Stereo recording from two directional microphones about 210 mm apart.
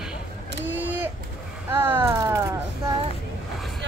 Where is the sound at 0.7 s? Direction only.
10° right (ahead or behind).